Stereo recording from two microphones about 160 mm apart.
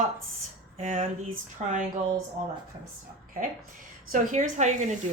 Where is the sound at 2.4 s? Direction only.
50° right (ahead or behind).